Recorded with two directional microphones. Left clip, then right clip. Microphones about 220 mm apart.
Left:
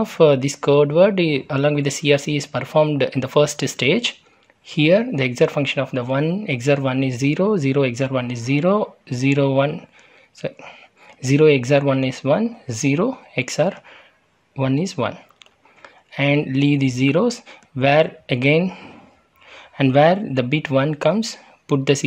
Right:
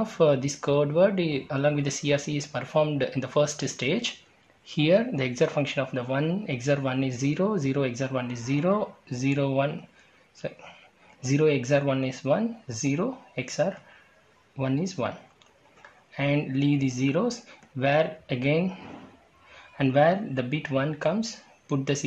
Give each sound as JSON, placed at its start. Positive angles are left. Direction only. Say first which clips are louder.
{"t": 0.0, "sound": "speech", "louder": "left 8 dB", "side_deg": 35}